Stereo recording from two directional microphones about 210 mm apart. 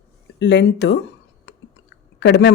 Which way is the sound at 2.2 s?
50° left (ahead or behind).